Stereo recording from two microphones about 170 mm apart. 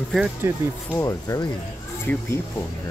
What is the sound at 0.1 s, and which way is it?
Speech, 5° right (ahead or behind).